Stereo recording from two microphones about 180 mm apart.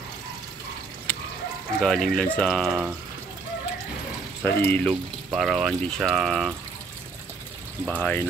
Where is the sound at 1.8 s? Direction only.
5° left (ahead or behind).